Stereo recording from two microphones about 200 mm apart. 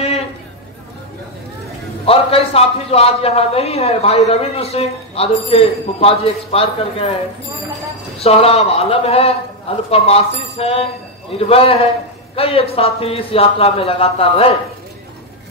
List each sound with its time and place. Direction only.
2.0 s a man's voice: 30° left (ahead or behind)
8.2 s a man's voice: 30° left (ahead or behind)